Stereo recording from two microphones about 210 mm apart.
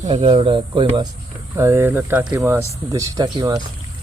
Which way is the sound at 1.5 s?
10° right (ahead or behind).